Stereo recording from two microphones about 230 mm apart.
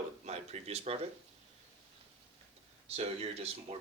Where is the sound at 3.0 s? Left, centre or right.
Right.